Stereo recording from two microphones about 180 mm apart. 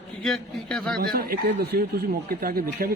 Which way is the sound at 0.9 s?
55° right (ahead or behind).